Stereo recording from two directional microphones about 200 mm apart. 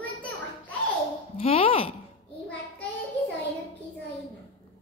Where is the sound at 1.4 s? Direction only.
30° left (ahead or behind).